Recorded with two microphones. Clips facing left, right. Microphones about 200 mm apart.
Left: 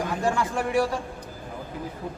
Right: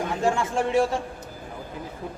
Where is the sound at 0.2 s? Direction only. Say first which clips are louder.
Right 3 dB; 25° right (ahead or behind).